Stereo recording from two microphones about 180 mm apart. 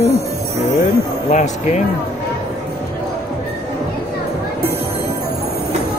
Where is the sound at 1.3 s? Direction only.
40° left (ahead or behind).